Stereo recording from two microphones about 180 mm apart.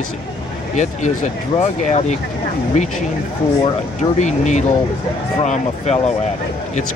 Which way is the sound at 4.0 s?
40° left (ahead or behind).